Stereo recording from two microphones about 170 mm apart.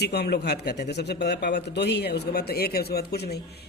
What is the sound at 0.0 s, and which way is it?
A man's voice, 75° left (ahead or behind).